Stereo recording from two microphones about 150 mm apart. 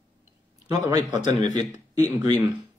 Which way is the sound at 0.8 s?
25° right (ahead or behind).